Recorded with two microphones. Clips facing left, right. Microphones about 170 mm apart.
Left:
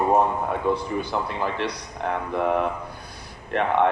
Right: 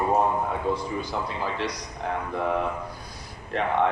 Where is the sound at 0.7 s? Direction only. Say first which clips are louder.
Left 3 dB; 60° left (ahead or behind).